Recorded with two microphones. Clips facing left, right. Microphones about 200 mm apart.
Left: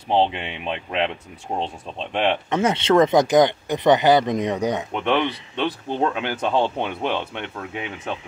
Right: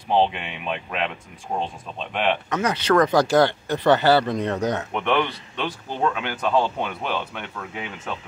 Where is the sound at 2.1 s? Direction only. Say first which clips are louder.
Left 2 dB; 30° left (ahead or behind).